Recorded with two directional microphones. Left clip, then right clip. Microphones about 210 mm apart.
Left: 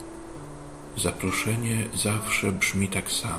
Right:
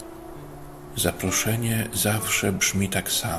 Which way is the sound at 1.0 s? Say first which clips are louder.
Right 2 dB; 25° right (ahead or behind).